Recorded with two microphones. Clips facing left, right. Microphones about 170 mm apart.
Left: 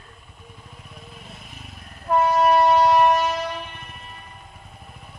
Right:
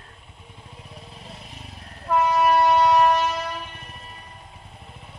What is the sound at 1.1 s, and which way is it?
Vehicle, 30° right (ahead or behind).